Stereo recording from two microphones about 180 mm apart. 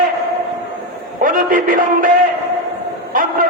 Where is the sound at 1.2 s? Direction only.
50° right (ahead or behind).